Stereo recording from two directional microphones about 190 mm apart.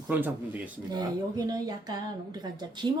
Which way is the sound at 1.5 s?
20° right (ahead or behind).